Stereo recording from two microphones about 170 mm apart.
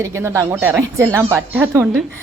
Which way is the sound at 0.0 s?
15° right (ahead or behind).